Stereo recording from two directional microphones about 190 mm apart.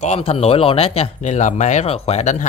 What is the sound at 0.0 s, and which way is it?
Speech, 35° left (ahead or behind).